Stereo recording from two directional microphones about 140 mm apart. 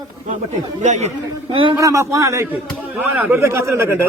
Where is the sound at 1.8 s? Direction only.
25° right (ahead or behind).